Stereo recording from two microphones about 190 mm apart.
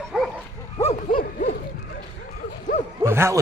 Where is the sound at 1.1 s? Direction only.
45° left (ahead or behind).